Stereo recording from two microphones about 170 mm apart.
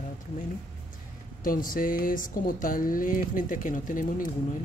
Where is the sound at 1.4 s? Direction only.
55° left (ahead or behind).